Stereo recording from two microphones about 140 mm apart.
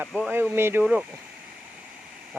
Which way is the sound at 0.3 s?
15° right (ahead or behind).